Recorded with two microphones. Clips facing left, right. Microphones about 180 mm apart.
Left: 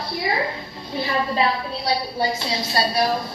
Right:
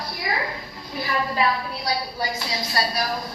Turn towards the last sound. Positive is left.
turn(degrees=25)  # may be behind; listen again after turning